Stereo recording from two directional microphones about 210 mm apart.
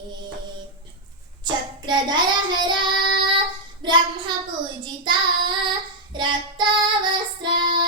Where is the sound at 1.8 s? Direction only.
20° right (ahead or behind).